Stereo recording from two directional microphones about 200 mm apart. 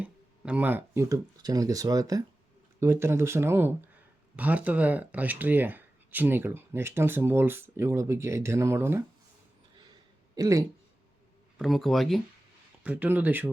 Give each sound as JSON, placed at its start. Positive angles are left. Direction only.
{"t": 0.0, "sound": "speech", "side_deg": -5}
{"t": 10.3, "sound": "speech", "side_deg": -15}
{"t": 11.5, "sound": "speech", "side_deg": 0}